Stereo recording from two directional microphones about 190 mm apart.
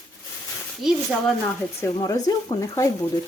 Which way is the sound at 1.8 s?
20° left (ahead or behind).